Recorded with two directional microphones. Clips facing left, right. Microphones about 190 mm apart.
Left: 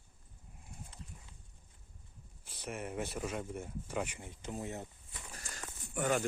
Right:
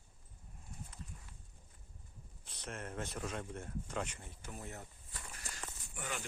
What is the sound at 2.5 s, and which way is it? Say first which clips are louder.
Speech: left 4 dB; 10° left (ahead or behind).